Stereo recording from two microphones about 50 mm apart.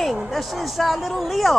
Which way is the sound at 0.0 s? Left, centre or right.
Centre.